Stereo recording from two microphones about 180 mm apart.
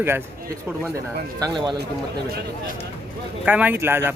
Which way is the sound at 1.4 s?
20° right (ahead or behind).